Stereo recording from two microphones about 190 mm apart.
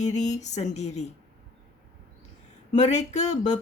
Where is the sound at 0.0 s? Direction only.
35° left (ahead or behind).